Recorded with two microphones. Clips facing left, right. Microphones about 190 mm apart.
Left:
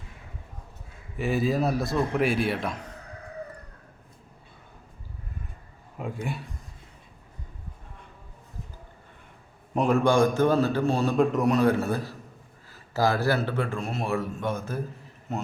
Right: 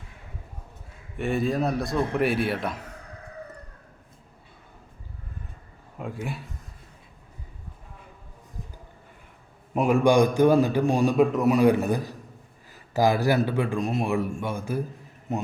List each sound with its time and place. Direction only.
1.1 s a man's voice: centre (ahead or behind)
6.0 s a sound: centre (ahead or behind)
9.7 s a man's voice: 10° right (ahead or behind)
11.3 s a man's voice: 5° right (ahead or behind)